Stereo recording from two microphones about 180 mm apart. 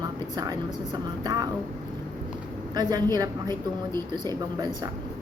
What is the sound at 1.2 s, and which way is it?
Speech, 20° right (ahead or behind).